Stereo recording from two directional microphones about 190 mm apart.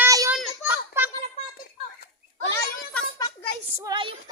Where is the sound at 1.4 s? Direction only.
40° left (ahead or behind).